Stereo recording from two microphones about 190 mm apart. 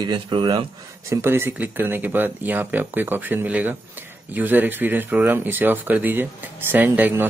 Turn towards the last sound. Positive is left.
turn(degrees=-10)  # may be behind; listen again after turning